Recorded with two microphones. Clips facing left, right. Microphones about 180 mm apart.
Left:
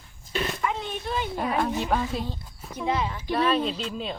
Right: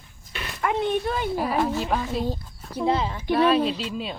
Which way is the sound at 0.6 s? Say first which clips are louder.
Right 6 dB; 60° right (ahead or behind).